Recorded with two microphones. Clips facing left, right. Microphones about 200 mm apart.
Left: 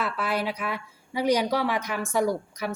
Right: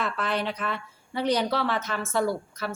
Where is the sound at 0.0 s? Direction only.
10° left (ahead or behind).